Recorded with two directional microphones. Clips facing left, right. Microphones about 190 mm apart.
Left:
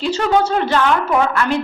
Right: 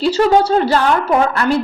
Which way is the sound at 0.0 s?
35° right (ahead or behind).